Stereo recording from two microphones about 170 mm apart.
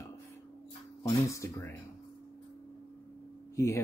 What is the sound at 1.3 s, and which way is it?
Speech, 15° left (ahead or behind).